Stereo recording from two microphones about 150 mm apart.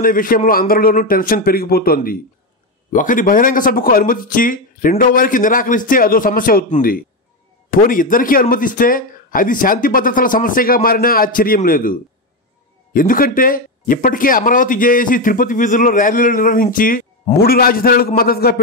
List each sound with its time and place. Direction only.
0.0 s speech: 70° left (ahead or behind)
2.9 s speech: 60° left (ahead or behind); by 18.6 s 90° left